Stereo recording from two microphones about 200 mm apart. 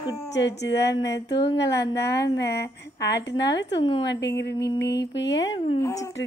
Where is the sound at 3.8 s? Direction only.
25° left (ahead or behind).